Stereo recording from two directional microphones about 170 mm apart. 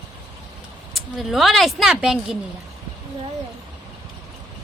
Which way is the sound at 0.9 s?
Centre (ahead or behind).